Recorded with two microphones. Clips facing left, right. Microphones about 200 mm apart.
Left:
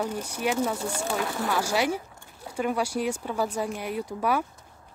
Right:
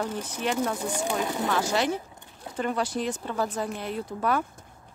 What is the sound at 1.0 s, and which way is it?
Speech, 15° right (ahead or behind).